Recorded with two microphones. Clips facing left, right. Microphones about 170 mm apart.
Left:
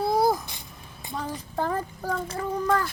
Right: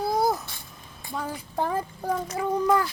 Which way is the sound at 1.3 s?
10° right (ahead or behind).